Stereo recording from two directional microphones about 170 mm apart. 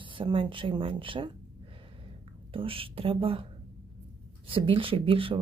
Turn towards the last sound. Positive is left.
turn(degrees=-30)  # may be behind; listen again after turning